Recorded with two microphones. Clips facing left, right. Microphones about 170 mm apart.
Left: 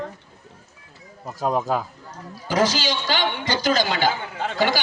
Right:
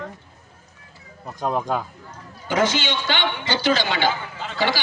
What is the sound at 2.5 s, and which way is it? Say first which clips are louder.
A woman's voice: even; 35° left (ahead or behind).